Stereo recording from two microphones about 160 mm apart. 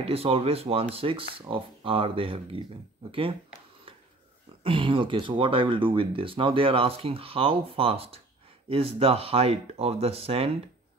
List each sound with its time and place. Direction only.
0.0 s speech: 40° right (ahead or behind)
3.9 s a sound: 35° right (ahead or behind)
4.6 s speech: 35° right (ahead or behind)